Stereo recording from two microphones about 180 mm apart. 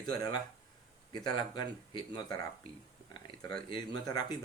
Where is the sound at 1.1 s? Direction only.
25° left (ahead or behind).